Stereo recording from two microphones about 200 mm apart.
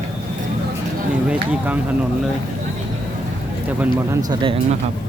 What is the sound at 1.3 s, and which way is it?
Speech, 5° right (ahead or behind).